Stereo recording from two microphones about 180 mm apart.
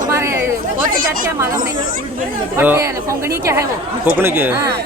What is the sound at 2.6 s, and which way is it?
Speech, 10° right (ahead or behind).